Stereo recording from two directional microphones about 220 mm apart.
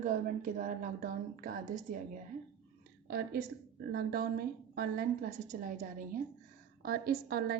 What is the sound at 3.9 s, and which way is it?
A woman's voice, 45° right (ahead or behind).